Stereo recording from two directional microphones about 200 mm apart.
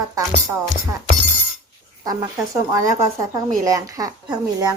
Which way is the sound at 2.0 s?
20° right (ahead or behind).